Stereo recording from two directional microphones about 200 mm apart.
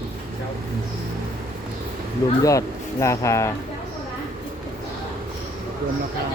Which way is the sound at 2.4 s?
15° left (ahead or behind).